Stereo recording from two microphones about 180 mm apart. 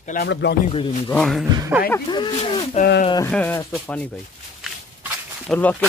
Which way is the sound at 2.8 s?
40° left (ahead or behind).